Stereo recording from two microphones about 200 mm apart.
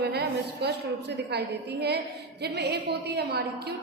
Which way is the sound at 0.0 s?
55° right (ahead or behind).